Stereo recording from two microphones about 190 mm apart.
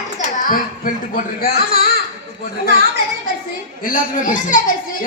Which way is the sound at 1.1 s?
50° left (ahead or behind).